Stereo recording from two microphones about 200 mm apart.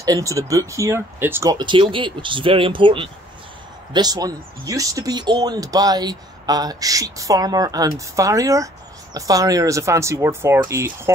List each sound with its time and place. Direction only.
0.0 s speech: 15° right (ahead or behind)